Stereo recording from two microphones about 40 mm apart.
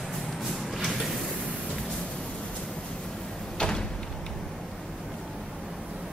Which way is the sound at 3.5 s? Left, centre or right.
Centre.